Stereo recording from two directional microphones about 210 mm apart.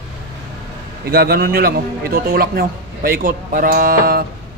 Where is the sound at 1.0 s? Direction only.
45° right (ahead or behind).